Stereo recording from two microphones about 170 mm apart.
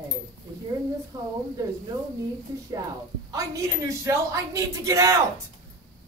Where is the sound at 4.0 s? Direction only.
20° right (ahead or behind).